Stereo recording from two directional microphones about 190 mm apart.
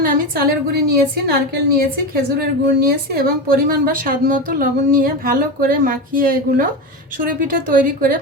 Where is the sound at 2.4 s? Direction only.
50° right (ahead or behind).